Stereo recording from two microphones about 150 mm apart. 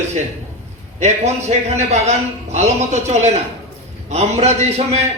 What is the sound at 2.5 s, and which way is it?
A man's voice, 50° right (ahead or behind).